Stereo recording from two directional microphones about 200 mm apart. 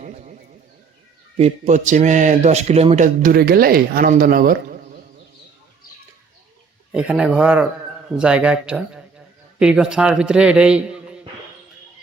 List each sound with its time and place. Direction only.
0.0 s a sound: 35° right (ahead or behind)
1.4 s speech: 35° right (ahead or behind)
6.9 s a man's voice: 5° right (ahead or behind)